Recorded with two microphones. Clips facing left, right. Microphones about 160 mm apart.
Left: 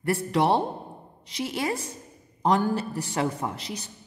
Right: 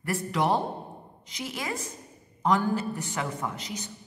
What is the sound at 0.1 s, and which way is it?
A man's voice, 30° left (ahead or behind).